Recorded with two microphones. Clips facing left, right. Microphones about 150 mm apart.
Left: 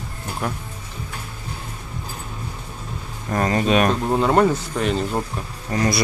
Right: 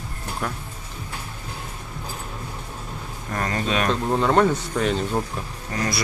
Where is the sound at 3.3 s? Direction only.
20° left (ahead or behind); by 5.2 s 5° left (ahead or behind).